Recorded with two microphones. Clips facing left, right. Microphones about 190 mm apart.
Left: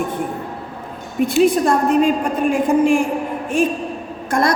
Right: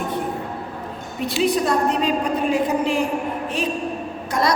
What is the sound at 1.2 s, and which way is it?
A woman's voice, 50° left (ahead or behind).